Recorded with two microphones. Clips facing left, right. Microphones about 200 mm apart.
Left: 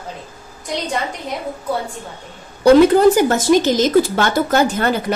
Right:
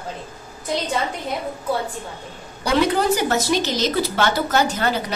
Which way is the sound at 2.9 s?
50° left (ahead or behind).